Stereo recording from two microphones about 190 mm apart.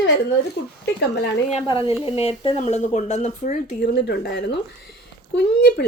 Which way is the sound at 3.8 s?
60° left (ahead or behind).